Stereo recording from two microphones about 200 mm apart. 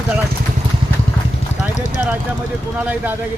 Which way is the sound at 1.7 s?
40° left (ahead or behind).